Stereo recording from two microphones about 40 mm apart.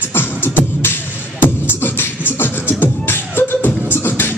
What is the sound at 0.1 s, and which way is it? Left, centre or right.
Beatboxing, left.